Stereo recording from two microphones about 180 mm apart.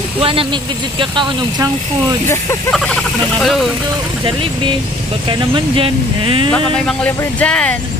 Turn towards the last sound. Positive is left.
turn(degrees=5)  # may be behind; listen again after turning